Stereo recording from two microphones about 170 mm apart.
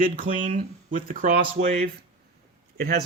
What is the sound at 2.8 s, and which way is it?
Speech, 65° right (ahead or behind).